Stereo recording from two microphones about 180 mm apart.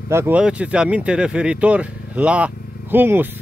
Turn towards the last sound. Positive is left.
turn(degrees=-10)  # may be behind; listen again after turning